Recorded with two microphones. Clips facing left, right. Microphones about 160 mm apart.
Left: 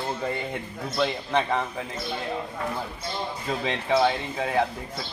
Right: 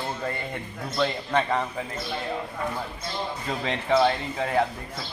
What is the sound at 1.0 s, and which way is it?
A man's voice, 10° left (ahead or behind).